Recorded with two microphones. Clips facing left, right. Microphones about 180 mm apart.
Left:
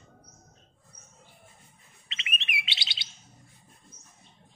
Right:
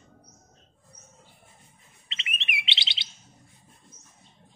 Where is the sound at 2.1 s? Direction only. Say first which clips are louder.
Even; 25° right (ahead or behind).